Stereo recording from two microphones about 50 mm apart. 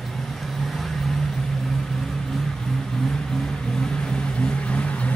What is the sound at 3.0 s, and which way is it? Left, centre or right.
Vehicle, centre.